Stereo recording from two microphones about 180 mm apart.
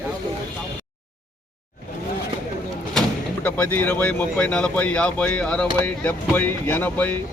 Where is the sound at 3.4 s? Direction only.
10° left (ahead or behind).